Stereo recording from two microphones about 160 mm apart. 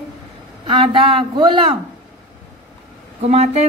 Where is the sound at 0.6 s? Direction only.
30° right (ahead or behind).